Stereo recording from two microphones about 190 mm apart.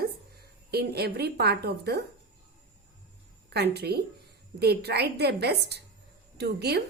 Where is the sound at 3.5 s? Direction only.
60° right (ahead or behind).